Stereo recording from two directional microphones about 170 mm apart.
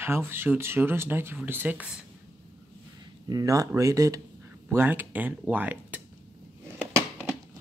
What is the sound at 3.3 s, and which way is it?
Speech, 20° right (ahead or behind).